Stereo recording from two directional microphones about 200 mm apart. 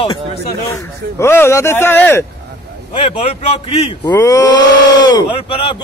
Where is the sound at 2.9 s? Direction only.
30° left (ahead or behind).